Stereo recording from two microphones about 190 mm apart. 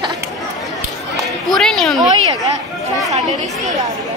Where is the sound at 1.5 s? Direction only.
Centre (ahead or behind).